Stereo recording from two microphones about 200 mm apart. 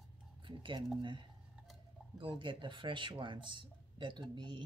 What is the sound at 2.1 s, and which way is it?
Speech, 25° right (ahead or behind).